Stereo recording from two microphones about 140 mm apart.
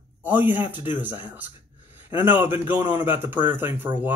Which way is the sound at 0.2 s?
10° right (ahead or behind).